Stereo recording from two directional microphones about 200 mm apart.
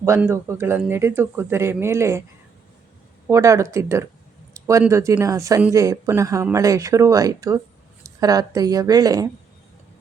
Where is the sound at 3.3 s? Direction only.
15° right (ahead or behind).